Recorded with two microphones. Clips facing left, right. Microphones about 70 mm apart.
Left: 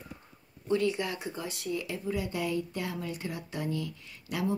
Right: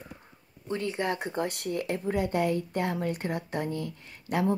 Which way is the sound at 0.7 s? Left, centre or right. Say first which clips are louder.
Left 1 dB; right.